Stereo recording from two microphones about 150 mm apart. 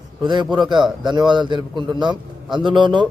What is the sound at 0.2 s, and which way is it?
A man's voice, 30° right (ahead or behind).